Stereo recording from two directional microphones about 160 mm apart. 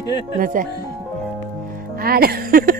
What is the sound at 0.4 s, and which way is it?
Speech, 60° right (ahead or behind).